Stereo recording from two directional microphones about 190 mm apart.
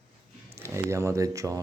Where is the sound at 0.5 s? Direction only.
15° right (ahead or behind).